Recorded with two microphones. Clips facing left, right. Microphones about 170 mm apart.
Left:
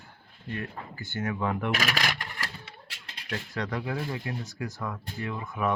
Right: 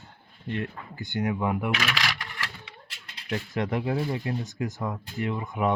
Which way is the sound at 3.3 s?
25° right (ahead or behind).